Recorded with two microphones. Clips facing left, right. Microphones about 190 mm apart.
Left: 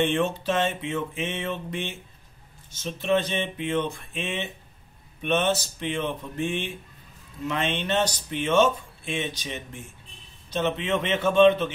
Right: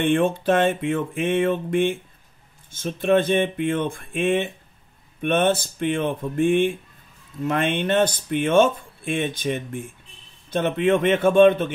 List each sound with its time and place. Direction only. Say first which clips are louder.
0.0 s speech: right 4 dB; 55° right (ahead or behind)